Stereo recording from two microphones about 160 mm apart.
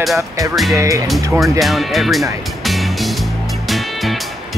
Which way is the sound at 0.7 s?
20° right (ahead or behind).